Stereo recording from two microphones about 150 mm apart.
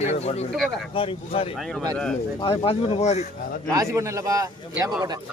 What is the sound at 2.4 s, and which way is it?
Speech, 35° left (ahead or behind).